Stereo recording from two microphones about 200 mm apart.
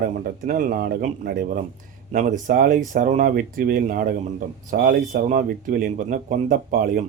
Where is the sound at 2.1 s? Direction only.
40° right (ahead or behind).